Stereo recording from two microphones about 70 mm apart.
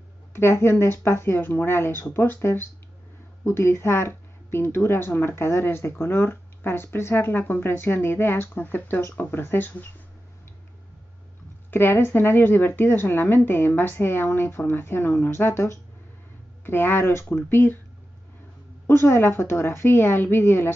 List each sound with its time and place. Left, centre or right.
0.3 s a woman's voice: left
11.7 s a woman's voice: left
18.9 s a woman's voice: left